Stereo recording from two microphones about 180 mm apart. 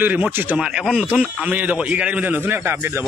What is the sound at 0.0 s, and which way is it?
Speech, 10° right (ahead or behind).